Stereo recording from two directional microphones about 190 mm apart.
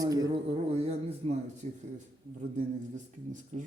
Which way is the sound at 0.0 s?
20° right (ahead or behind).